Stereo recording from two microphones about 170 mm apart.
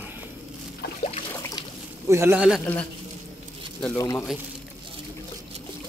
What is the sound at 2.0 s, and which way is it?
Speech, 15° right (ahead or behind).